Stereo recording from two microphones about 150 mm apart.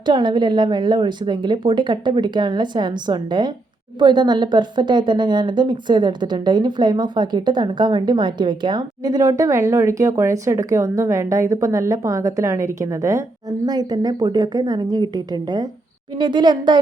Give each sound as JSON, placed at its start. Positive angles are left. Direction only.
{"t": 0.0, "sound": "a woman's voice", "side_deg": -30}